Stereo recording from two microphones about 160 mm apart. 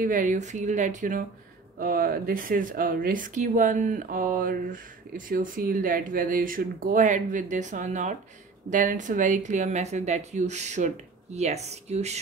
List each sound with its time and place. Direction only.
0.0 s speech: 55° right (ahead or behind)